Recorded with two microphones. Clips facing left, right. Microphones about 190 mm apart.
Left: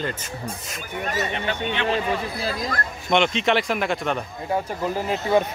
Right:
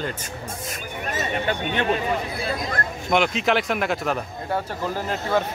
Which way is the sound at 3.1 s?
5° right (ahead or behind).